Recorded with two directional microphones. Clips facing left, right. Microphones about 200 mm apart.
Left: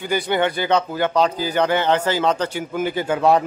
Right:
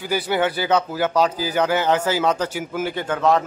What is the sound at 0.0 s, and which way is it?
A man's voice, 5° right (ahead or behind).